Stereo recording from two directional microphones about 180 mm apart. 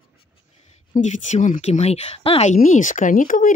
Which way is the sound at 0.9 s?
40° left (ahead or behind).